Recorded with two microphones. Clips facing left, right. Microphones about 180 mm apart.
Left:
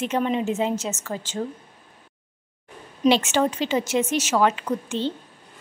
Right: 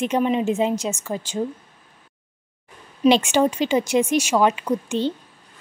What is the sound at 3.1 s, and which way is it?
Speech, 15° right (ahead or behind).